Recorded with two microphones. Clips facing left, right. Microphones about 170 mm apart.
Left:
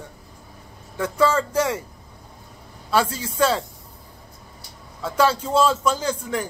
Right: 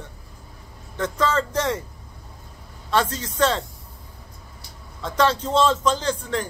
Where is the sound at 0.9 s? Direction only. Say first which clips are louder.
Left 2 dB; 10° left (ahead or behind).